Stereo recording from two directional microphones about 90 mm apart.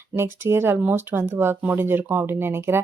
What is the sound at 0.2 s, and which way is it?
Speech, 30° right (ahead or behind).